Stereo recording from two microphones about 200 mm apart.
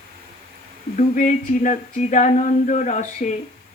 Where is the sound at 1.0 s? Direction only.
40° left (ahead or behind).